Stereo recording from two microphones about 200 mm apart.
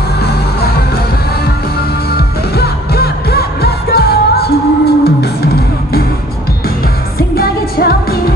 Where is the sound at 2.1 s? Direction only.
55° left (ahead or behind).